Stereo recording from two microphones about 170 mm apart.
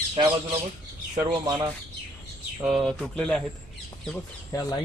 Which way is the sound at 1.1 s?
20° right (ahead or behind).